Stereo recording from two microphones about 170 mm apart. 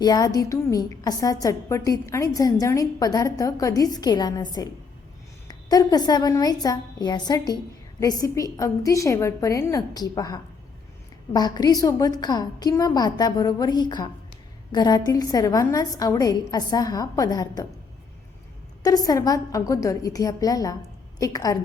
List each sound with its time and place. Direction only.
0.0 s a woman's voice: 20° left (ahead or behind)
18.8 s a woman's voice: 20° left (ahead or behind)